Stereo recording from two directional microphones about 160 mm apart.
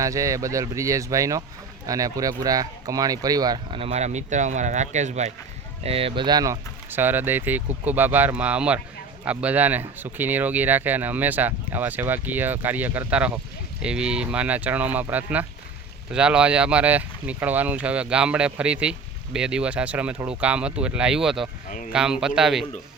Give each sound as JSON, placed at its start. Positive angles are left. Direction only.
{"t": 0.0, "sound": "speech", "side_deg": -20}
{"t": 21.7, "sound": "speech", "side_deg": 55}
{"t": 21.9, "sound": "speech", "side_deg": -5}